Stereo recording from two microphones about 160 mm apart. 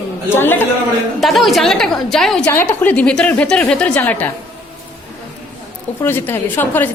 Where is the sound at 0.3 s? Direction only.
10° left (ahead or behind).